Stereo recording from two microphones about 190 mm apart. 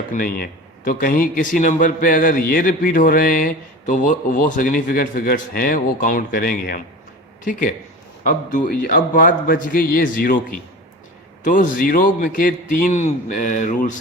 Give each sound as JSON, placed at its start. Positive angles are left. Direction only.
{"t": 0.1, "sound": "a man's voice", "side_deg": 50}
{"t": 8.2, "sound": "a man's voice", "side_deg": 45}
{"t": 11.4, "sound": "a man's voice", "side_deg": 45}